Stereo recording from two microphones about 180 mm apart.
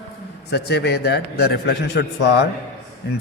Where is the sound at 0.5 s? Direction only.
65° left (ahead or behind).